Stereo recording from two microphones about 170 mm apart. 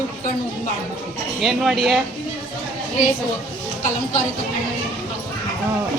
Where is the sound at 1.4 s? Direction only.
Centre (ahead or behind).